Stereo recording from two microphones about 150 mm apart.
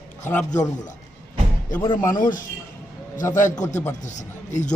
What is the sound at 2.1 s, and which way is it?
Speech, 65° left (ahead or behind).